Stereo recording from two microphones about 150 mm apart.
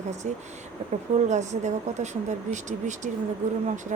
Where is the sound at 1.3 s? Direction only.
50° right (ahead or behind).